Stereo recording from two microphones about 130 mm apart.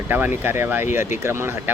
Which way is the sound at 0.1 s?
15° right (ahead or behind).